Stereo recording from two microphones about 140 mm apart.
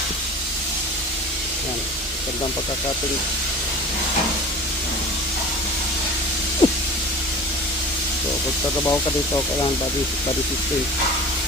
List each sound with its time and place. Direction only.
6.6 s vehicle: 40° left (ahead or behind)
8.9 s speech: 25° left (ahead or behind)